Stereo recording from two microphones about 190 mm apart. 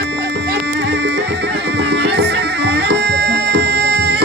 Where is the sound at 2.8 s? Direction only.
60° right (ahead or behind).